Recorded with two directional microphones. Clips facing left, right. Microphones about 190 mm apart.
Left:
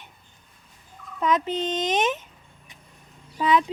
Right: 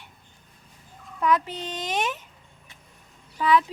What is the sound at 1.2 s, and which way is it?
Speech, 20° left (ahead or behind).